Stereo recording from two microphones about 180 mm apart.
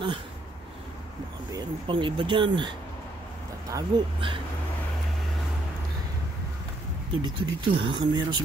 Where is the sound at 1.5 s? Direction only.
25° right (ahead or behind).